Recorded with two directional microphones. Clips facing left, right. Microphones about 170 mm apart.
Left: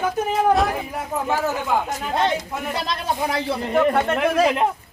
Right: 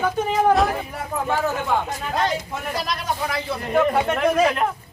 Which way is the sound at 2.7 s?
25° left (ahead or behind).